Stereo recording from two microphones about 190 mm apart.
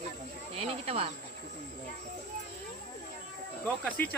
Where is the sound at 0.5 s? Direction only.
30° right (ahead or behind).